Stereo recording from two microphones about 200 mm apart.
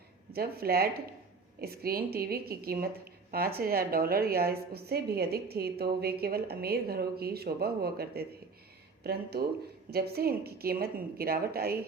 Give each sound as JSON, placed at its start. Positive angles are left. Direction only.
{"t": 0.3, "sound": "speech", "side_deg": -50}
{"t": 9.9, "sound": "speech", "side_deg": -50}